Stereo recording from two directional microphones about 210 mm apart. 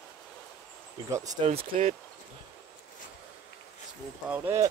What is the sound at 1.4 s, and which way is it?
Speech, 30° right (ahead or behind).